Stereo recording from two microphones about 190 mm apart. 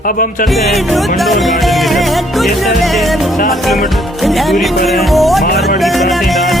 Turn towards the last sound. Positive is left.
turn(degrees=0)  # may be behind; listen again after turning